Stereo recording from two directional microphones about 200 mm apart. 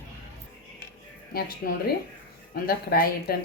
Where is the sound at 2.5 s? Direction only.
50° left (ahead or behind).